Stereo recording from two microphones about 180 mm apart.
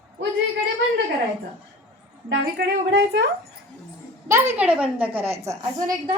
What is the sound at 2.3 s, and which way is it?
A woman's voice, 75° right (ahead or behind).